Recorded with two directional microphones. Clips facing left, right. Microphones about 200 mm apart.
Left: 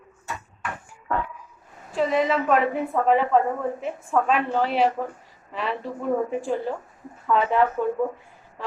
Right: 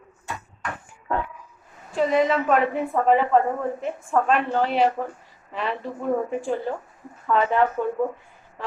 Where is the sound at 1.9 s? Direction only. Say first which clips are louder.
Right 2 dB; centre (ahead or behind).